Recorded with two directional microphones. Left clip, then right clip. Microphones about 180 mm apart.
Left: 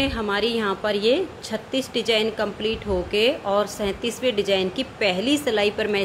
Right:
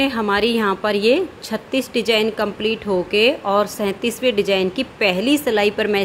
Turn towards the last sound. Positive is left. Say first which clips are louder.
# right 4 dB
turn(degrees=-25)  # may be behind; listen again after turning